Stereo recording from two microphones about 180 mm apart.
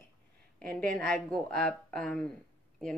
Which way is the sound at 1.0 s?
5° left (ahead or behind).